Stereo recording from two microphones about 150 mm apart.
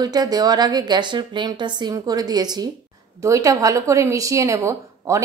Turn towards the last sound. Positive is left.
turn(degrees=-20)  # may be behind; listen again after turning